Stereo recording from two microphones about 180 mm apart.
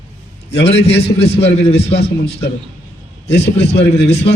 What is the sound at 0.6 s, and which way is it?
Speech, 35° left (ahead or behind).